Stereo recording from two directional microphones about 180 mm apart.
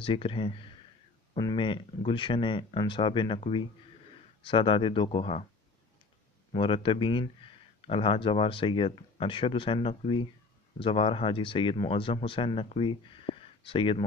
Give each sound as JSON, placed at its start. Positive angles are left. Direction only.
{"t": 0.0, "sound": "speech", "side_deg": 30}
{"t": 6.5, "sound": "speech", "side_deg": 30}